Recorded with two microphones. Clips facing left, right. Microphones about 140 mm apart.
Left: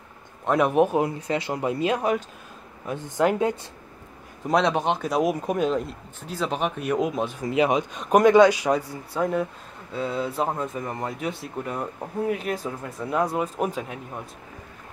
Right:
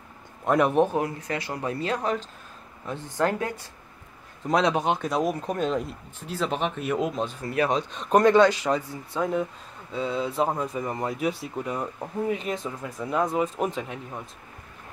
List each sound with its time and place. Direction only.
0.5 s speech: centre (ahead or behind)
0.8 s speech: 20° left (ahead or behind)
4.5 s speech: centre (ahead or behind)
5.1 s speech: 10° left (ahead or behind)